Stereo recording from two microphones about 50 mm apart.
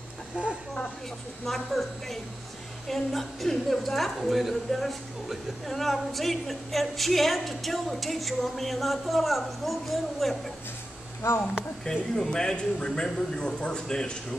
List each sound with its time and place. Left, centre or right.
1.4 s a woman's voice: centre
11.8 s a man's voice: centre